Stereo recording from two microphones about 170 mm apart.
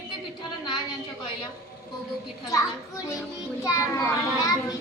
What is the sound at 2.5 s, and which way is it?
A child's voice, 20° left (ahead or behind).